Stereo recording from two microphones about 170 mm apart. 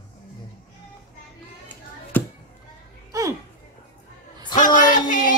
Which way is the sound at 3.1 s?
20° right (ahead or behind).